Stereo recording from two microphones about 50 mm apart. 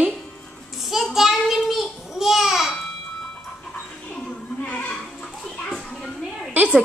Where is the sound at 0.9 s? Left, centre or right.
Centre.